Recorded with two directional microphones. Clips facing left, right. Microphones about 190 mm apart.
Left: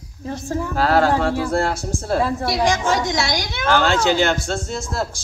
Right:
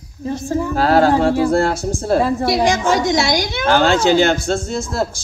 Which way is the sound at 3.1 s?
30° right (ahead or behind).